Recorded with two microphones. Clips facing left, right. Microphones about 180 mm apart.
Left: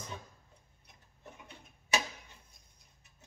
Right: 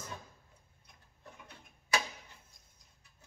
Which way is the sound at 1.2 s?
20° left (ahead or behind).